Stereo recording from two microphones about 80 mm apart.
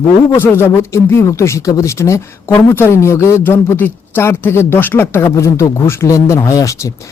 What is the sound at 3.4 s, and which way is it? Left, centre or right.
Speech, left.